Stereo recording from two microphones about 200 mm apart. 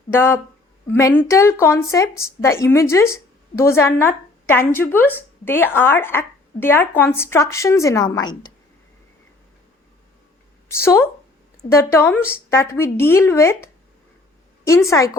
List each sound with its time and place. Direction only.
0.1 s a woman's voice: 10° left (ahead or behind)
10.7 s speech: 15° left (ahead or behind)
14.8 s speech: 15° left (ahead or behind)